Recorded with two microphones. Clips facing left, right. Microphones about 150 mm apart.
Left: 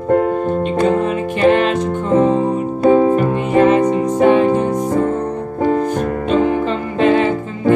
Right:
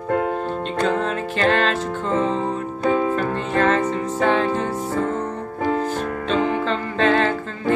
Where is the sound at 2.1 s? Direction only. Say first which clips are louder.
Left 9 dB; 55° left (ahead or behind).